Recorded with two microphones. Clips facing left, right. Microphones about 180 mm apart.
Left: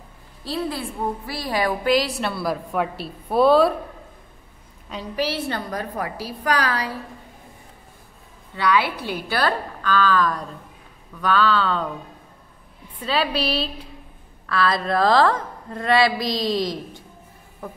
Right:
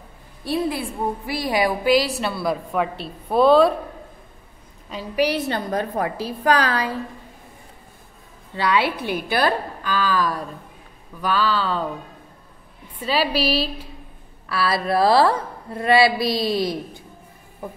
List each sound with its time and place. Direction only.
0.4 s a woman's voice: 15° right (ahead or behind); by 3.7 s 5° left (ahead or behind)
5.1 s a woman's voice: 15° right (ahead or behind)
8.5 s a woman's voice: 25° right (ahead or behind); by 11.9 s 5° right (ahead or behind)
13.0 s a woman's voice: 5° right (ahead or behind)